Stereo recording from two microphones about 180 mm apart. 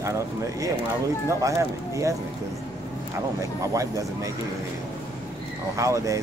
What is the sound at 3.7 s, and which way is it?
Speech, 20° right (ahead or behind).